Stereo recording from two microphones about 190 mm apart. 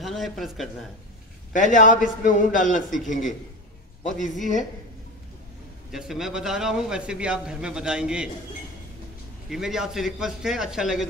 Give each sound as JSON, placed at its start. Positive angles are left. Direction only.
{"t": 0.0, "sound": "a sound", "side_deg": 0}
{"t": 1.5, "sound": "a man's voice", "side_deg": 40}
{"t": 4.4, "sound": "a woman's voice", "side_deg": 40}
{"t": 5.9, "sound": "a man's voice", "side_deg": 0}
{"t": 9.5, "sound": "a man's voice", "side_deg": 0}